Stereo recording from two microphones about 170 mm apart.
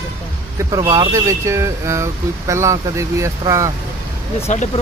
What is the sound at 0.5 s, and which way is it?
Speech, 20° right (ahead or behind).